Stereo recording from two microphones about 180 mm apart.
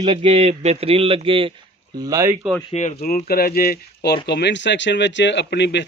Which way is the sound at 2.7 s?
40° left (ahead or behind).